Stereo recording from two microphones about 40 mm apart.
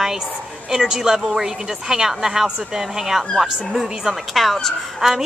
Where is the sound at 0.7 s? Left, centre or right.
Centre.